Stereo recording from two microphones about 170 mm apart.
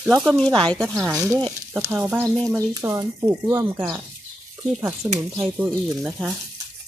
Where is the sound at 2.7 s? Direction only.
20° right (ahead or behind).